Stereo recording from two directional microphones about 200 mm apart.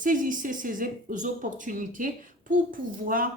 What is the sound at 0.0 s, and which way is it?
Speech, 40° right (ahead or behind).